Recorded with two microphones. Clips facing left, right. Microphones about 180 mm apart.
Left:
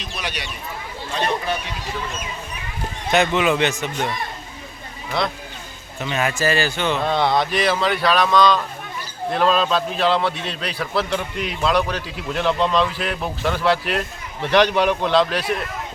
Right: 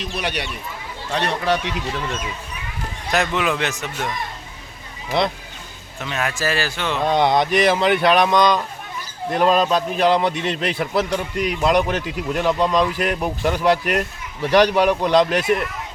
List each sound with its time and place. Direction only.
0.2 s speech: 60° right (ahead or behind)
1.1 s speech: 75° right (ahead or behind)
3.1 s a man's voice: centre (ahead or behind)
6.0 s a man's voice: centre (ahead or behind)
7.0 s speech: 15° right (ahead or behind)